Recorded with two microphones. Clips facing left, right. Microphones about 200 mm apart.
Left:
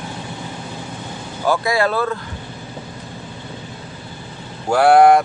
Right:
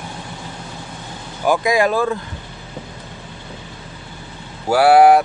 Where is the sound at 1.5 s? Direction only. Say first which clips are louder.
Right 2 dB; 15° right (ahead or behind).